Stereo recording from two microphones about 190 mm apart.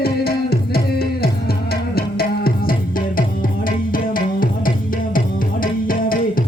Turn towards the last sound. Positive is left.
turn(degrees=50)  # may be behind; listen again after turning